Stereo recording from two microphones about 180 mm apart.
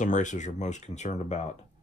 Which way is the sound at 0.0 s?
45° left (ahead or behind).